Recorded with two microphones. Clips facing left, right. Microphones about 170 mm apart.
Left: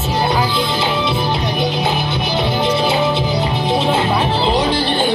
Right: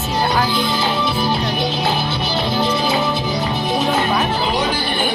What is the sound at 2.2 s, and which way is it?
Music, 20° left (ahead or behind).